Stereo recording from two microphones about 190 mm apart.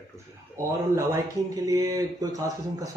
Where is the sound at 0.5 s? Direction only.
15° right (ahead or behind).